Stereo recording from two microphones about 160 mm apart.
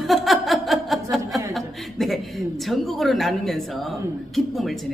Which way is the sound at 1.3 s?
Centre (ahead or behind).